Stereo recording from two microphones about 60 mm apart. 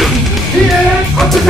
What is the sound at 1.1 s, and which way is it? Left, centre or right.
Music, centre.